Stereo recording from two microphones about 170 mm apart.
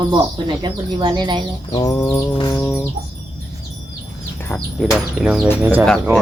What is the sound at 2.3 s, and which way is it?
Music, 20° left (ahead or behind).